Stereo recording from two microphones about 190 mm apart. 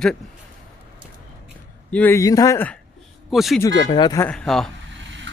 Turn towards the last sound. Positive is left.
turn(degrees=0)  # may be behind; listen again after turning